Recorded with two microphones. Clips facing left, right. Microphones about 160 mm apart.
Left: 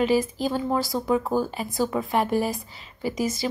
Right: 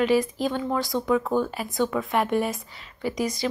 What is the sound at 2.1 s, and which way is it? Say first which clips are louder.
A woman's voice: left 1 dB; centre (ahead or behind).